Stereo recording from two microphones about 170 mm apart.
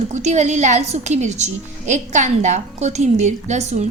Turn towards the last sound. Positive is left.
turn(degrees=-40)  # may be behind; listen again after turning